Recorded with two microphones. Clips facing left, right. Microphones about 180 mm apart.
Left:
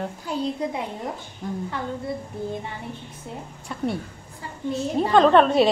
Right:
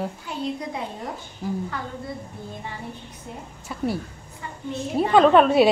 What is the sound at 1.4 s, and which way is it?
Speech, 5° right (ahead or behind).